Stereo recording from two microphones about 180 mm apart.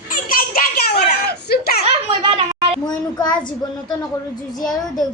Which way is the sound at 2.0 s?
30° right (ahead or behind).